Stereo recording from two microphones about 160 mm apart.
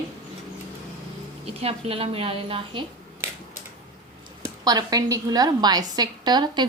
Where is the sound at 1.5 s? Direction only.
35° right (ahead or behind).